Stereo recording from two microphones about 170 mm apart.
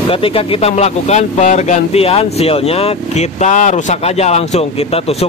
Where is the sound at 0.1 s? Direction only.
35° left (ahead or behind).